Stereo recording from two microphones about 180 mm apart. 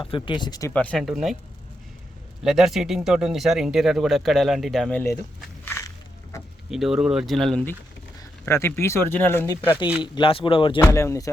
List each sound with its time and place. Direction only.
0.0 s speech: 25° left (ahead or behind)
0.7 s speech: 10° left (ahead or behind)
2.4 s speech: centre (ahead or behind)
5.6 s a sound: 15° left (ahead or behind)
6.7 s speech: centre (ahead or behind); by 9.7 s 15° left (ahead or behind)
10.0 s speech: 30° left (ahead or behind)
10.8 s speech: 15° left (ahead or behind)